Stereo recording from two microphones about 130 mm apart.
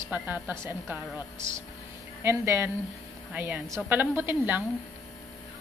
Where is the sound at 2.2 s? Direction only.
20° right (ahead or behind).